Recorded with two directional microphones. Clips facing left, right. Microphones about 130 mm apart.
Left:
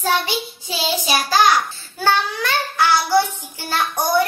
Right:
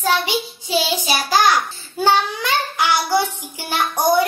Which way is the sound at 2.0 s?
15° right (ahead or behind).